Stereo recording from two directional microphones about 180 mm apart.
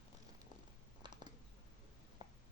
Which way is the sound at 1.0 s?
25° right (ahead or behind).